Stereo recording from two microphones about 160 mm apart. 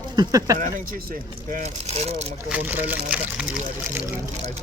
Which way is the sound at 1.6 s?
40° right (ahead or behind).